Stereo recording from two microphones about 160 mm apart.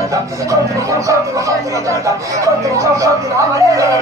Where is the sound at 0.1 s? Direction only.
20° right (ahead or behind).